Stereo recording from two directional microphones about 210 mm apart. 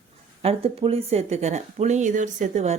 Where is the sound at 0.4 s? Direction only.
25° right (ahead or behind).